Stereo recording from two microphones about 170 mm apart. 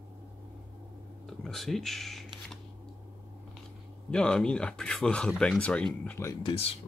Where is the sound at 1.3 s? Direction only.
Centre (ahead or behind).